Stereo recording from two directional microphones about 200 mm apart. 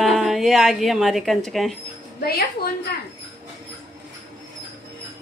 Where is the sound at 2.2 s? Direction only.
50° left (ahead or behind).